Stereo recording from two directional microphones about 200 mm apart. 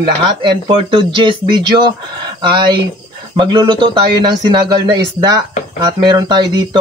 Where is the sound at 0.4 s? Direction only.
25° right (ahead or behind).